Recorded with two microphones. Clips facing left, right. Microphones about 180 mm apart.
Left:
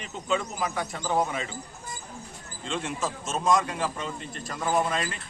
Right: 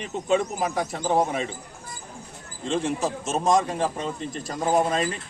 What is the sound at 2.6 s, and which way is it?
A man's voice, 40° right (ahead or behind).